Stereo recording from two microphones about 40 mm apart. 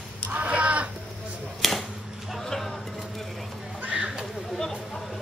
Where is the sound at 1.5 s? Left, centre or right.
Centre.